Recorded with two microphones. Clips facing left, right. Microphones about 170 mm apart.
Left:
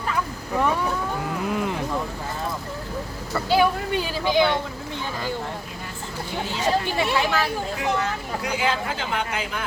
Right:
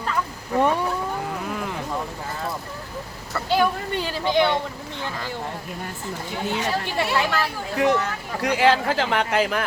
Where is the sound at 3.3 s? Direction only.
5° left (ahead or behind).